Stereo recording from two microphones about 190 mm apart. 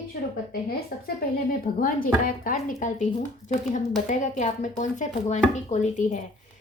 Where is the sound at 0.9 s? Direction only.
50° left (ahead or behind).